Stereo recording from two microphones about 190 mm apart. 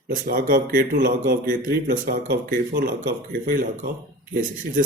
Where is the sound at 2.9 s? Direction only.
50° right (ahead or behind).